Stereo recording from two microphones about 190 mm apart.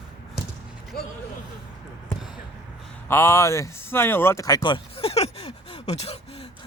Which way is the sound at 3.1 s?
15° left (ahead or behind).